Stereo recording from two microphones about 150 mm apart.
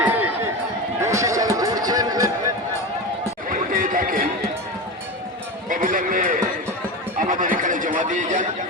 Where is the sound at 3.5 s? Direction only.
65° right (ahead or behind).